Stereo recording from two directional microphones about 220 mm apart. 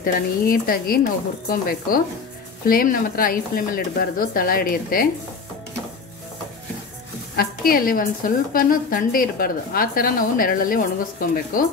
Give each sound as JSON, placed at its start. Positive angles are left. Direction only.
{"t": 0.0, "sound": "a woman's voice", "side_deg": 40}
{"t": 7.3, "sound": "a woman's voice", "side_deg": 40}